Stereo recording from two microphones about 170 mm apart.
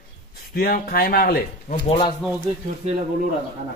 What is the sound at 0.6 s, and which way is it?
Speech, 60° left (ahead or behind).